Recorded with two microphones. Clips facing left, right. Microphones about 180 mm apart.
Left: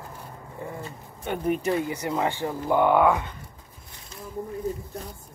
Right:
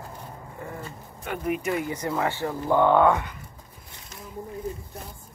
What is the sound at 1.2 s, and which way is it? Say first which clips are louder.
Speech: left 2 dB; 30° left (ahead or behind).